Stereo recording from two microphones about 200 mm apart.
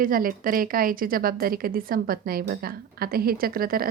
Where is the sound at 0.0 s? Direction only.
45° right (ahead or behind).